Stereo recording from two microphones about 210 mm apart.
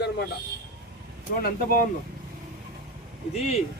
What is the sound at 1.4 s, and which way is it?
Speech, 45° left (ahead or behind).